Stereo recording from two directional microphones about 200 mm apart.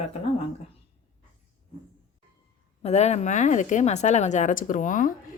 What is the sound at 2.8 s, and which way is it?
A woman's voice, 35° left (ahead or behind).